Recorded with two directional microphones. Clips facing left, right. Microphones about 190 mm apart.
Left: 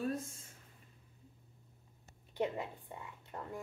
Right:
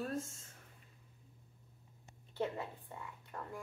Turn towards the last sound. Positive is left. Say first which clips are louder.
# left 2 dB
turn(degrees=20)  # may be behind; listen again after turning